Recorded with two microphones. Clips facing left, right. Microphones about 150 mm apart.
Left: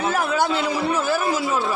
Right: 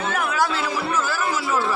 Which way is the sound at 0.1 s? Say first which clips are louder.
Even; 30° left (ahead or behind).